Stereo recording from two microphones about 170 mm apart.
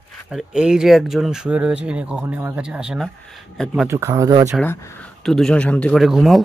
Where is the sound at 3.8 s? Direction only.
15° right (ahead or behind).